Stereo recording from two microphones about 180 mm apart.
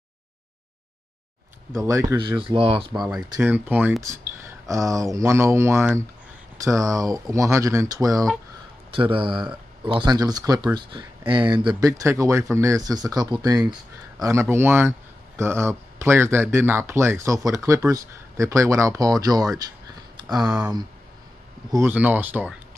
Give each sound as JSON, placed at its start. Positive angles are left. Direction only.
{"t": 1.9, "sound": "speech", "side_deg": -15}
{"t": 3.3, "sound": "speech", "side_deg": -10}
{"t": 20.3, "sound": "speech", "side_deg": -5}
{"t": 21.7, "sound": "speech", "side_deg": -10}